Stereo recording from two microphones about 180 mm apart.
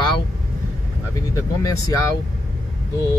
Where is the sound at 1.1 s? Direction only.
15° left (ahead or behind).